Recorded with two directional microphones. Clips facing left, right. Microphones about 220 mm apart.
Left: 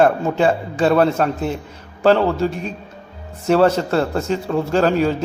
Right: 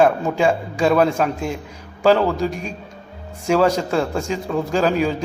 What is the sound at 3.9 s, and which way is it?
A man's voice, centre (ahead or behind).